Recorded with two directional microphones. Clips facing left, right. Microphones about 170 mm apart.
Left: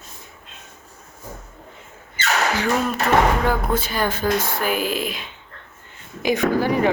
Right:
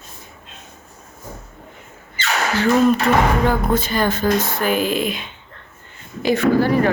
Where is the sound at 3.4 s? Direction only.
10° left (ahead or behind).